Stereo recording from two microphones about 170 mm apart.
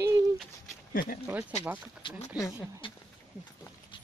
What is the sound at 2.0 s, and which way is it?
Speech, 40° left (ahead or behind).